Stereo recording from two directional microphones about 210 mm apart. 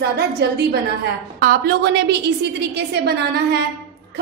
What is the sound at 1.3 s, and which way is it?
A woman's voice, 45° right (ahead or behind).